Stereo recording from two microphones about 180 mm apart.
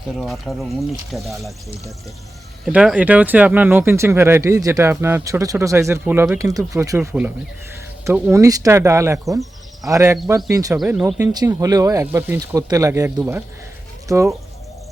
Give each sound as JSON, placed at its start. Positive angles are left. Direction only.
{"t": 0.2, "sound": "speech", "side_deg": 0}
{"t": 2.6, "sound": "speech", "side_deg": -5}